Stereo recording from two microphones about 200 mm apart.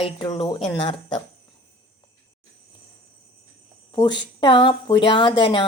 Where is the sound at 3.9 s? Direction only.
20° left (ahead or behind).